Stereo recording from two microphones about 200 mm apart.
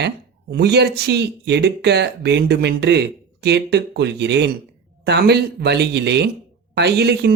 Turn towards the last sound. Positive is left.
turn(degrees=-55)  # may be behind; listen again after turning